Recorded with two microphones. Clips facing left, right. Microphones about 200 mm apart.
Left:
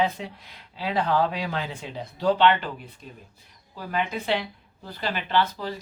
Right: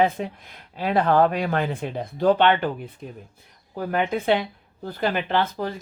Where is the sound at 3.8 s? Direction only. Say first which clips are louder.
Right 5 dB; 55° right (ahead or behind).